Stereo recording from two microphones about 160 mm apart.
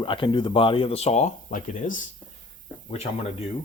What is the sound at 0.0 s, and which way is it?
Speech, 30° left (ahead or behind).